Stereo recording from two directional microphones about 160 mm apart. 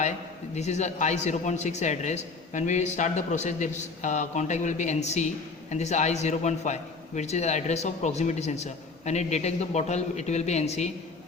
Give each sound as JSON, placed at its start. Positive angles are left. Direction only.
{"t": 0.5, "sound": "a man's voice", "side_deg": 45}